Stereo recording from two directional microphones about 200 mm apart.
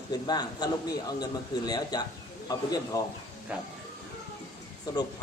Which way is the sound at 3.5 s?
5° right (ahead or behind).